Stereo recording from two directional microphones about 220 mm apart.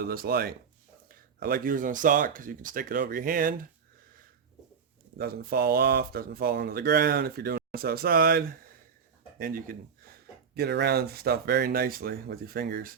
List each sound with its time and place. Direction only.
0.0 s speech: 45° right (ahead or behind)
5.1 s speech: 45° right (ahead or behind)